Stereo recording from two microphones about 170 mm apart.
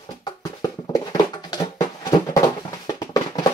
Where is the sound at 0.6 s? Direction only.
20° left (ahead or behind).